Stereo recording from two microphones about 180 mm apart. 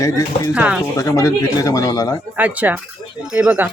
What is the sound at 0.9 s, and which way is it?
Speech, 15° left (ahead or behind).